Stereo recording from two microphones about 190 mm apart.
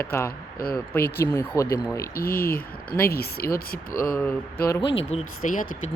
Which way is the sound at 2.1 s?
50° left (ahead or behind).